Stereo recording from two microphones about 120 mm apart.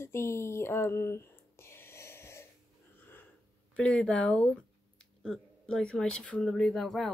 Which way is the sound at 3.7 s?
10° left (ahead or behind).